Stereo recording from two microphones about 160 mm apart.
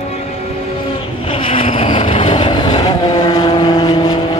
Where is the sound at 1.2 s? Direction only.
35° left (ahead or behind).